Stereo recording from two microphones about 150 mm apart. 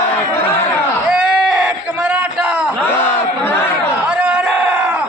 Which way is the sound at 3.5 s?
15° left (ahead or behind).